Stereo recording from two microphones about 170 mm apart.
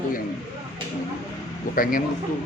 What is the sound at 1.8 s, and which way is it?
Speech, 55° left (ahead or behind).